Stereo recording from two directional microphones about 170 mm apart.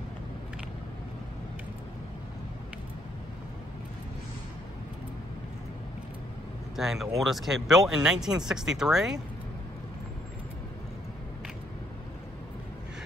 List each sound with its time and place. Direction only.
6.8 s speech: centre (ahead or behind)